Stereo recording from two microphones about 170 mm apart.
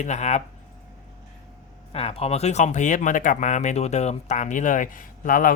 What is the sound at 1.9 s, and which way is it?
Speech, 35° left (ahead or behind).